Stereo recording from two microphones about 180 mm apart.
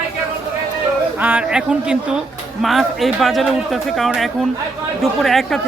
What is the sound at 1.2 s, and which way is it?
Speech, 10° right (ahead or behind).